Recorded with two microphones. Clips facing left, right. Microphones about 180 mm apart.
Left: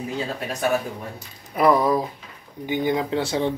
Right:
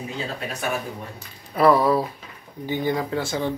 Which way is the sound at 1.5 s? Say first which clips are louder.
Right 1 dB; 15° left (ahead or behind).